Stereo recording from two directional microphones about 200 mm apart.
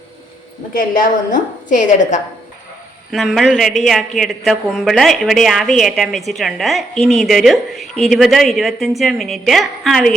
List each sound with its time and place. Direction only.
0.7 s a woman's voice: 45° left (ahead or behind)
3.1 s speech: centre (ahead or behind)